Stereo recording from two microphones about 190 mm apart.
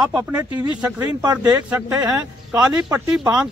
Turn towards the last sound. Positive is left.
turn(degrees=-5)  # may be behind; listen again after turning